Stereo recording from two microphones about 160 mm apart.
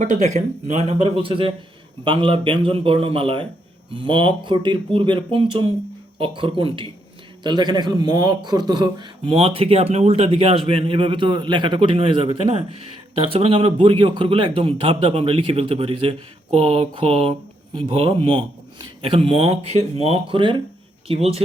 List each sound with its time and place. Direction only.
0.0 s speech: 45° right (ahead or behind)